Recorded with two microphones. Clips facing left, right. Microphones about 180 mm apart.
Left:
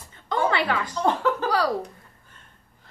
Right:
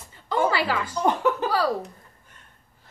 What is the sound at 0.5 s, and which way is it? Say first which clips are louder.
Speech: even; 5° right (ahead or behind).